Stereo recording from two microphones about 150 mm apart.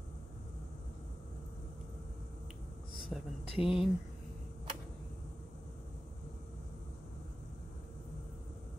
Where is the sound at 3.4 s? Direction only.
40° left (ahead or behind).